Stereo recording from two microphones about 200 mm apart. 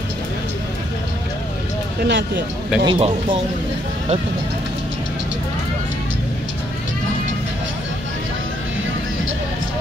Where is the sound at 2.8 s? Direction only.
25° right (ahead or behind).